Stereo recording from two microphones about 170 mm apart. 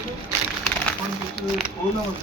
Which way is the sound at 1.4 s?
75° right (ahead or behind).